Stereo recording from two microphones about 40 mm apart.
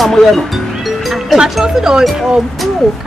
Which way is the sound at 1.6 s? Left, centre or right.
Centre.